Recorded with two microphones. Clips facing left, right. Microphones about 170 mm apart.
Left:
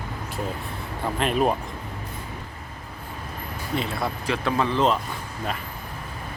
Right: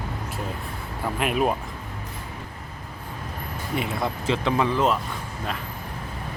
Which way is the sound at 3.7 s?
10° right (ahead or behind).